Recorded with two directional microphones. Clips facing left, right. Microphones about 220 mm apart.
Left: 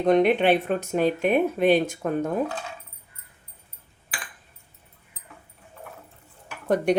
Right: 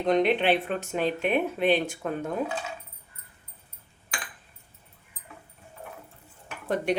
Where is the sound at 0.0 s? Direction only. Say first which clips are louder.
Left 4 dB; 50° left (ahead or behind).